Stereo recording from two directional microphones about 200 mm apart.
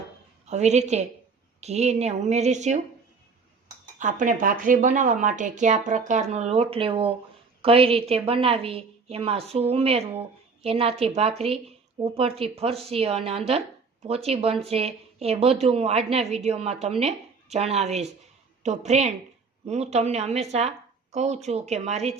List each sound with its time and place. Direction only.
0.4 s speech: 35° right (ahead or behind)
3.9 s a woman's voice: 40° right (ahead or behind)